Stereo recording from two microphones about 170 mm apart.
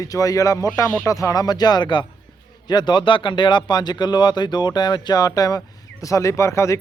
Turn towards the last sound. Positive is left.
turn(degrees=15)  # may be behind; listen again after turning